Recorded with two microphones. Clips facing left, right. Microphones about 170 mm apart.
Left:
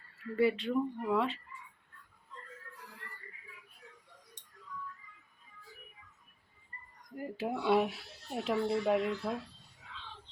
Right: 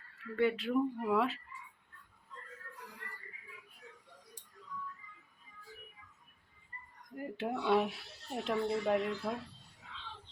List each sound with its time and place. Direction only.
0.3 s speech: centre (ahead or behind)
4.4 s music: 30° right (ahead or behind)
7.2 s speech: 5° left (ahead or behind)